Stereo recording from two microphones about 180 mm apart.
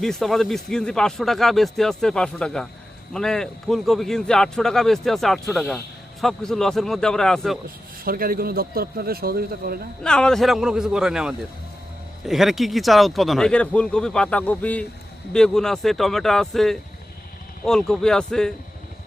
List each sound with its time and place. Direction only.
0.0 s a man's voice: centre (ahead or behind)
8.0 s a man's voice: 55° right (ahead or behind)
10.0 s a man's voice: 5° left (ahead or behind)